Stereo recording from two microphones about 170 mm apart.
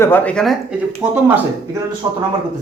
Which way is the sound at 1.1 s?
10° right (ahead or behind).